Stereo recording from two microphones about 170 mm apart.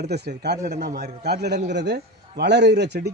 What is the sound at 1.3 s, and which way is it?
A man's voice, 75° right (ahead or behind).